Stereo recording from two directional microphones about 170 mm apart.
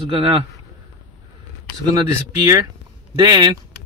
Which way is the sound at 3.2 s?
25° right (ahead or behind).